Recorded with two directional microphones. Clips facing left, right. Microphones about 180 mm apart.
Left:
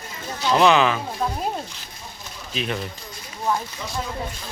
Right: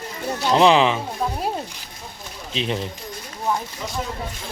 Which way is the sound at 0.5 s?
25° right (ahead or behind).